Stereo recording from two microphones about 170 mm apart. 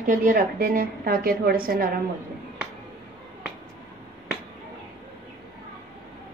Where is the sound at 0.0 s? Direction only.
50° right (ahead or behind).